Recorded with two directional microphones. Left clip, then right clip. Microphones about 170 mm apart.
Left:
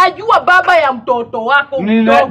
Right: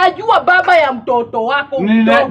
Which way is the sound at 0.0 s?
10° right (ahead or behind).